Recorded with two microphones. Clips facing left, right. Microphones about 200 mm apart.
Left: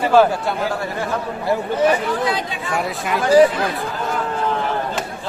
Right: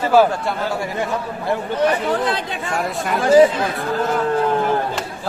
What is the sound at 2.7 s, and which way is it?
Speech, centre (ahead or behind).